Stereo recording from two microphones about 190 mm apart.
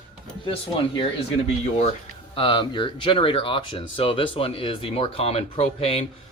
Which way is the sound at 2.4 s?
25° left (ahead or behind).